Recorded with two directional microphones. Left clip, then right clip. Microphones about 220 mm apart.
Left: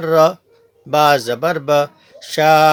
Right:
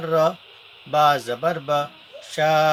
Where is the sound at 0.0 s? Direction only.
45° left (ahead or behind).